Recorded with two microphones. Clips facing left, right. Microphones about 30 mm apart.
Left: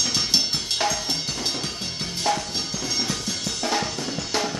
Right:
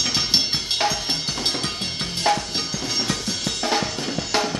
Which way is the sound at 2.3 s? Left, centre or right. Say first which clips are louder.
Right 3 dB; right.